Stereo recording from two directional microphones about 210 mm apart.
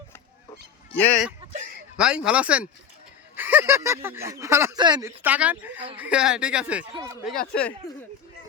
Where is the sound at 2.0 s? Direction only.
5° right (ahead or behind).